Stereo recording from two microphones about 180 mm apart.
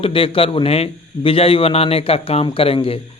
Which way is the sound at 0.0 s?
30° left (ahead or behind).